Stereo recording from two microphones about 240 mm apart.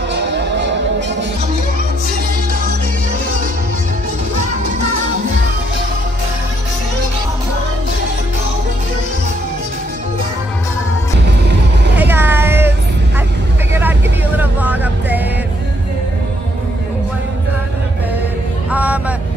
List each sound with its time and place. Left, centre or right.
0.1 s music: right
12.0 s vehicle: centre
13.7 s music: centre
18.7 s music: centre